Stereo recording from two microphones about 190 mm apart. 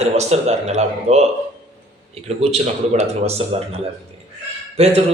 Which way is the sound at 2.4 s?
35° right (ahead or behind).